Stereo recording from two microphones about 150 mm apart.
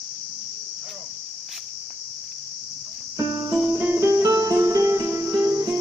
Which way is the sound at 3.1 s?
20° right (ahead or behind).